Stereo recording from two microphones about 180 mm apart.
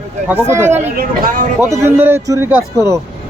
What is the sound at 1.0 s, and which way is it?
Speech, 50° right (ahead or behind).